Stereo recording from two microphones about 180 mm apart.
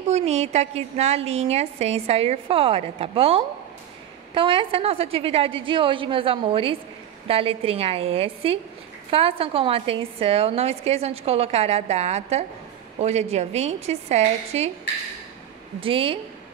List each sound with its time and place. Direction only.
0.1 s a woman's voice: 35° right (ahead or behind)
15.8 s a woman's voice: 30° right (ahead or behind)